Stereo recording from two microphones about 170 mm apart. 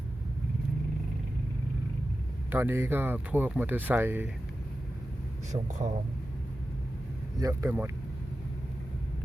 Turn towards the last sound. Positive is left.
turn(degrees=-15)  # may be behind; listen again after turning